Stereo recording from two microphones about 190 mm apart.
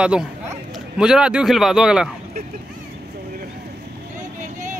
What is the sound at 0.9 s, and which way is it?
A man's voice, 5° right (ahead or behind).